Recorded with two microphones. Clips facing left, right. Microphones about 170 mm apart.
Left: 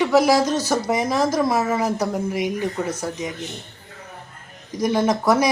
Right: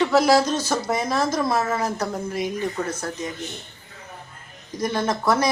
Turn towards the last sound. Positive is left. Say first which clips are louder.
# left 3 dB
turn(degrees=15)  # may be behind; listen again after turning